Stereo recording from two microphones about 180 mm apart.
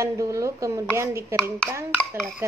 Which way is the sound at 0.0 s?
15° right (ahead or behind).